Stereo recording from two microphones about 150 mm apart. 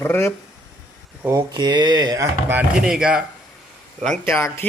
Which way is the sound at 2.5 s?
10° right (ahead or behind).